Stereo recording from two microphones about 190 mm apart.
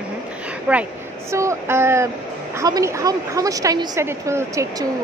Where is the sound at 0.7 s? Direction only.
10° right (ahead or behind).